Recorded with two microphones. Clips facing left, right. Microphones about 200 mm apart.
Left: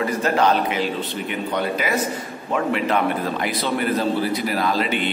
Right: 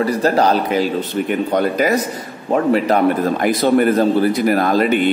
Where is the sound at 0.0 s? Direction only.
35° right (ahead or behind).